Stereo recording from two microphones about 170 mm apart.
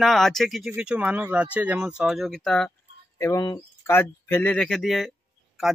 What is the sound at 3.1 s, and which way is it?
Speech, 20° left (ahead or behind).